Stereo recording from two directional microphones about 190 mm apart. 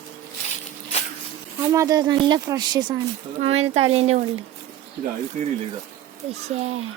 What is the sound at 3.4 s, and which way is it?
Speech, 35° right (ahead or behind).